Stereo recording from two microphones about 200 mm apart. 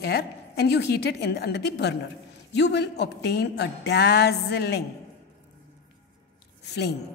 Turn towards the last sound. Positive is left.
turn(degrees=55)  # may be behind; listen again after turning